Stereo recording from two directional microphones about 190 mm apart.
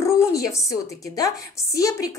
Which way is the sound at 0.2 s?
15° left (ahead or behind).